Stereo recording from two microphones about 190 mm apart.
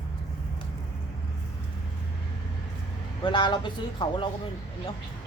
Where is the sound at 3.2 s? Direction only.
25° left (ahead or behind).